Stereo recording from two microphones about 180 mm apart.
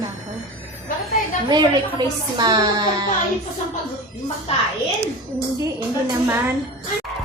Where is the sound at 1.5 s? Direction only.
25° right (ahead or behind).